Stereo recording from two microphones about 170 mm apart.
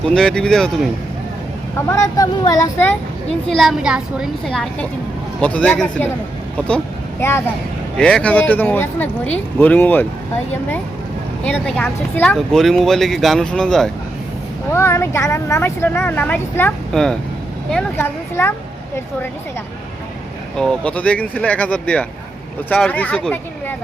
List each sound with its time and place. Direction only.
0.0 s speech: 5° left (ahead or behind)
1.9 s speech: 20° left (ahead or behind)
3.5 s speech: centre (ahead or behind)
11.4 s speech: 10° left (ahead or behind)
14.7 s speech: 15° left (ahead or behind)
20.6 s speech: 5° left (ahead or behind)